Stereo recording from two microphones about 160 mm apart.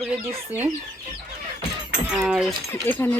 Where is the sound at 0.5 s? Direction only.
10° right (ahead or behind).